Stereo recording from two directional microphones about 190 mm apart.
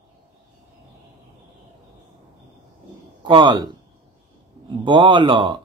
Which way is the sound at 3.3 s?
25° right (ahead or behind).